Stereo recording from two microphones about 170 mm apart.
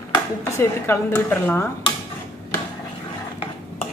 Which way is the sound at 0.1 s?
15° left (ahead or behind).